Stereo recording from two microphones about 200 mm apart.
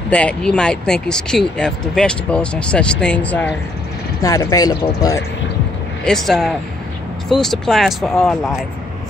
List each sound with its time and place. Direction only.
0.1 s speech: 5° left (ahead or behind)
6.0 s speech: centre (ahead or behind)